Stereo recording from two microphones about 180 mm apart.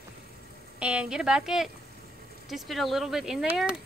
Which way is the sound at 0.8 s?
5° right (ahead or behind).